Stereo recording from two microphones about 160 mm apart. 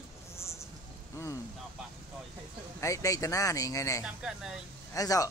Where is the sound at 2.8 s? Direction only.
20° left (ahead or behind).